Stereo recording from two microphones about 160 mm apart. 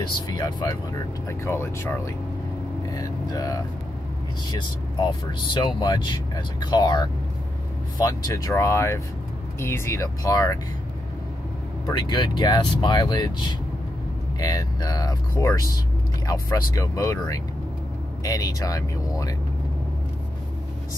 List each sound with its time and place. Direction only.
0.0 s speech: 25° left (ahead or behind)
5.0 s speech: 30° left (ahead or behind)
11.9 s speech: 25° left (ahead or behind)